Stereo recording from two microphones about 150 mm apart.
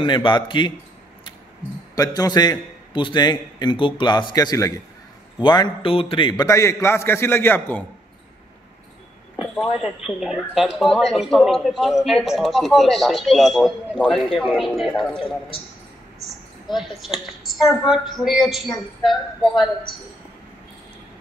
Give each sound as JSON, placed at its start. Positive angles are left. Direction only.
{"t": 0.0, "sound": "a man's voice", "side_deg": 35}
{"t": 2.0, "sound": "a man's voice", "side_deg": 25}
{"t": 6.4, "sound": "a man's voice", "side_deg": 20}
{"t": 9.4, "sound": "speech", "side_deg": 0}
{"t": 16.3, "sound": "speech", "side_deg": 0}